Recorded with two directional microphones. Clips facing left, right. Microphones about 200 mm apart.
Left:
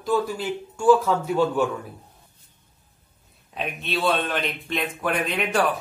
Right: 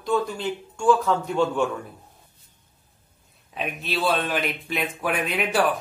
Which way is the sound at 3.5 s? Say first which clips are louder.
Even; centre (ahead or behind).